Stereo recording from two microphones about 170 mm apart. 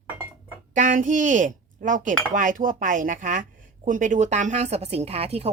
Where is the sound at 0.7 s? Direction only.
50° right (ahead or behind).